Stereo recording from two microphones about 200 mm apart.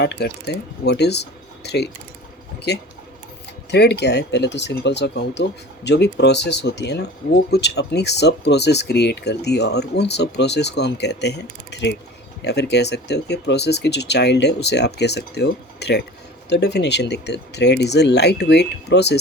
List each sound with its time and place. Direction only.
0.0 s speech: 55° left (ahead or behind)